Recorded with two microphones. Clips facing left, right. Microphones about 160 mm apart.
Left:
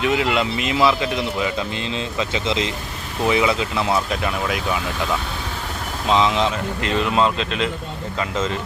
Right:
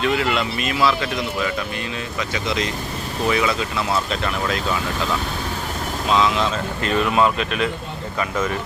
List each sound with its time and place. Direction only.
0.0 s speech: 20° left (ahead or behind)
6.1 s speech: 20° left (ahead or behind)